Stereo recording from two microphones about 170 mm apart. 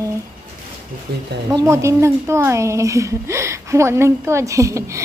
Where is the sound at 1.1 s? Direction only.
70° right (ahead or behind).